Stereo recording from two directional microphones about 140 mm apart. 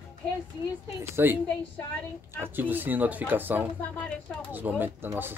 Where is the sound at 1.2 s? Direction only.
15° right (ahead or behind).